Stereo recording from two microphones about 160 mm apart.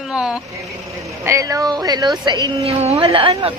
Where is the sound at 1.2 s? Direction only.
20° right (ahead or behind).